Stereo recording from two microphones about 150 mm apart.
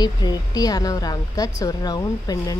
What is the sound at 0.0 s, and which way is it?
Speech, 25° left (ahead or behind).